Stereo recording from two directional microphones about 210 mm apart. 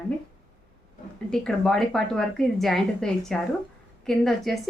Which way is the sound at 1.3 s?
5° left (ahead or behind).